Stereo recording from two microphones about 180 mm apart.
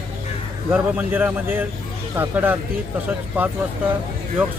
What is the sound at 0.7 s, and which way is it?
Speech, 10° right (ahead or behind).